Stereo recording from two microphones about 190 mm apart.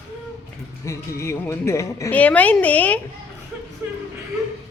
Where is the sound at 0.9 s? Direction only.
15° left (ahead or behind).